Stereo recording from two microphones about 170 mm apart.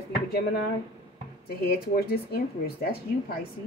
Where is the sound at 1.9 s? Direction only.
65° left (ahead or behind).